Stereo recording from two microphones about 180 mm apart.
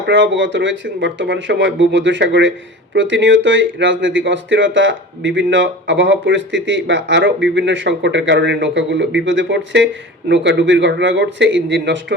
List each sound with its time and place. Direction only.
0.1 s speech: 90° right